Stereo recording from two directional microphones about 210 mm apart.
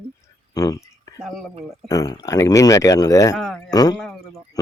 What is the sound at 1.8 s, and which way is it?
Speech, 15° left (ahead or behind).